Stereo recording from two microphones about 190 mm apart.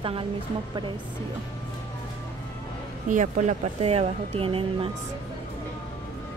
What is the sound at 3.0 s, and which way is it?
Speech, 40° right (ahead or behind).